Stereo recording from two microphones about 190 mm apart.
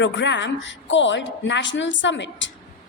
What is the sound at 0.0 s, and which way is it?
A woman's voice, 70° left (ahead or behind).